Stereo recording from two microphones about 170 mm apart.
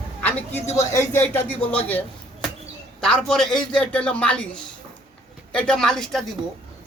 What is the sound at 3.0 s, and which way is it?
A man's voice, 5° left (ahead or behind).